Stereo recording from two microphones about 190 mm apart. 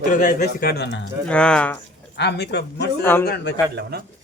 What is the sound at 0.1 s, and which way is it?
Speech, 45° left (ahead or behind).